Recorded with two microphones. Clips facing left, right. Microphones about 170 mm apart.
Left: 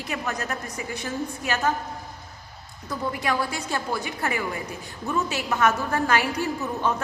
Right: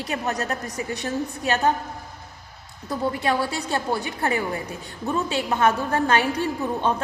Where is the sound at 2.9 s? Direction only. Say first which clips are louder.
Right 3 dB; 35° right (ahead or behind).